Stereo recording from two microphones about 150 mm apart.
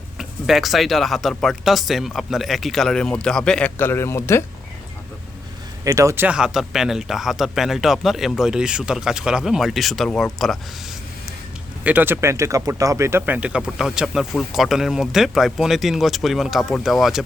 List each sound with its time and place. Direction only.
0.2 s speech: centre (ahead or behind); by 4.4 s 15° left (ahead or behind)
5.8 s speech: 20° right (ahead or behind)
6.2 s speech: 5° right (ahead or behind)
11.8 s speech: 10° right (ahead or behind)